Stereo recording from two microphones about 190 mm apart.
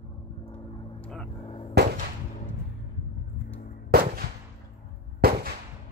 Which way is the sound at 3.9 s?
50° right (ahead or behind).